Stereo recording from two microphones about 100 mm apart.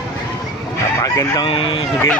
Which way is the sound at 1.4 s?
65° left (ahead or behind).